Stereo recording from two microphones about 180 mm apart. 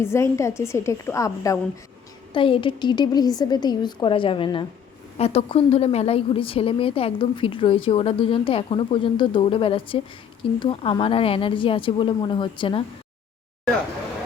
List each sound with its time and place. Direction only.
0.0 s a woman's voice: 15° left (ahead or behind)
2.3 s a woman's voice: 30° left (ahead or behind)